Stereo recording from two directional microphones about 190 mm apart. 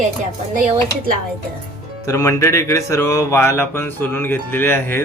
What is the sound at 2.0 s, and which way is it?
Speech, 15° left (ahead or behind).